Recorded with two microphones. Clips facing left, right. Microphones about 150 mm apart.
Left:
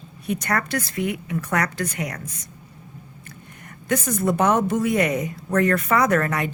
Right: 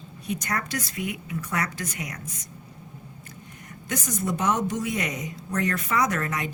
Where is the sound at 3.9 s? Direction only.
55° left (ahead or behind).